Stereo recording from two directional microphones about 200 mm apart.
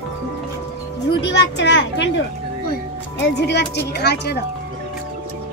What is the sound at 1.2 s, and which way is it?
Speech, 60° left (ahead or behind).